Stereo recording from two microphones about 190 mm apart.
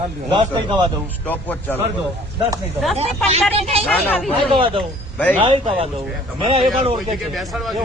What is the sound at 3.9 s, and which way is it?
Speech, 5° left (ahead or behind).